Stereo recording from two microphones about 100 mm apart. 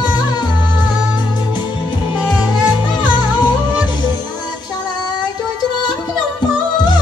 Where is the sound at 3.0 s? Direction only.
45° left (ahead or behind).